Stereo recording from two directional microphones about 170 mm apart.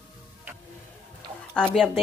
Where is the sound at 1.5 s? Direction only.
5° left (ahead or behind).